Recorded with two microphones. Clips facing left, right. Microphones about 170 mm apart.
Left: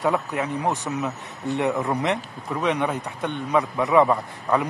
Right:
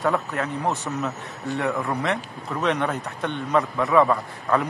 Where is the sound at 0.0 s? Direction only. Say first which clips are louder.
Left 1 dB; 15° left (ahead or behind).